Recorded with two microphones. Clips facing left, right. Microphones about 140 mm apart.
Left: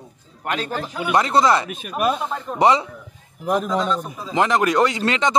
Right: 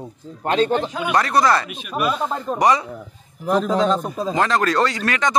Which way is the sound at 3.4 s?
10° left (ahead or behind).